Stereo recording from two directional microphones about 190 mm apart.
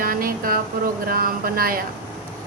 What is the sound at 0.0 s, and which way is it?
Vehicle, 50° right (ahead or behind).